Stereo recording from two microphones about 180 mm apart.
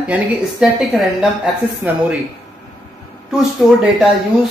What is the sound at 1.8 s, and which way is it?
Speech, 10° right (ahead or behind).